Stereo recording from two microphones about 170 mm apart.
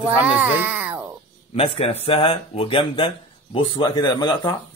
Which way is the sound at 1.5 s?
35° left (ahead or behind).